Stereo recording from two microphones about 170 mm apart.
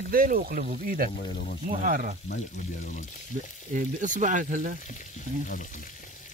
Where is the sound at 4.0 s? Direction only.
45° right (ahead or behind).